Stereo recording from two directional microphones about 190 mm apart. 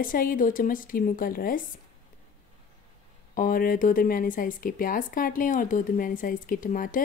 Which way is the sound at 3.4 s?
50° left (ahead or behind).